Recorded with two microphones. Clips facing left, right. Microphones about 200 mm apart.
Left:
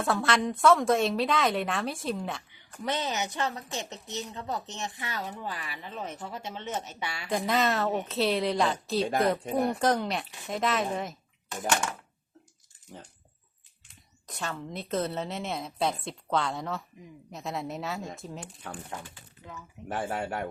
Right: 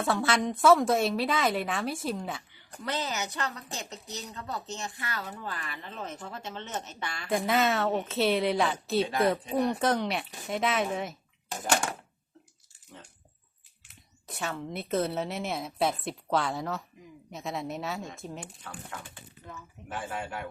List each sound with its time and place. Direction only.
0.0 s a woman's voice: centre (ahead or behind)
2.8 s a woman's voice: 20° left (ahead or behind)
7.3 s a woman's voice: 5° right (ahead or behind)
13.8 s a woman's voice: 5° right (ahead or behind)
19.9 s speech: 40° left (ahead or behind)